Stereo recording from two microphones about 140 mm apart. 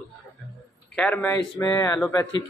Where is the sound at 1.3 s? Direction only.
25° left (ahead or behind).